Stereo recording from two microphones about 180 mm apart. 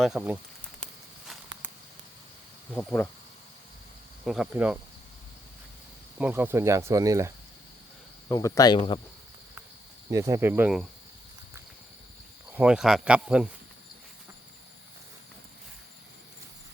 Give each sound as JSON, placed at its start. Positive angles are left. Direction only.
{"t": 0.0, "sound": "speech", "side_deg": 0}
{"t": 2.7, "sound": "speech", "side_deg": 5}
{"t": 4.3, "sound": "speech", "side_deg": -5}
{"t": 6.1, "sound": "speech", "side_deg": -10}
{"t": 8.3, "sound": "speech", "side_deg": 20}
{"t": 10.1, "sound": "speech", "side_deg": -15}
{"t": 12.5, "sound": "speech", "side_deg": -10}